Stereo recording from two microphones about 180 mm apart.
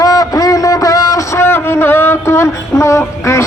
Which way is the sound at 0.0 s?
20° left (ahead or behind).